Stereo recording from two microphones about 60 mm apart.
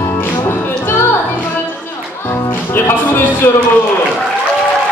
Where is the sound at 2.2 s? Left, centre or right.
Left.